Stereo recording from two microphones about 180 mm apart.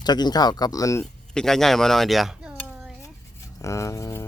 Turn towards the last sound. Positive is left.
turn(degrees=15)  # may be behind; listen again after turning